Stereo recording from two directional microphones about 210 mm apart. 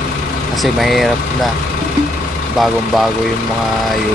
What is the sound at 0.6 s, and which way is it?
Speech, centre (ahead or behind).